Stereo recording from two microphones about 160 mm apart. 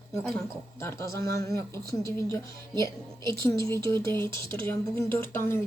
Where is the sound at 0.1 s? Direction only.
15° left (ahead or behind).